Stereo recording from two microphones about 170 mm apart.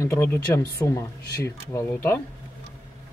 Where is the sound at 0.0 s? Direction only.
15° left (ahead or behind).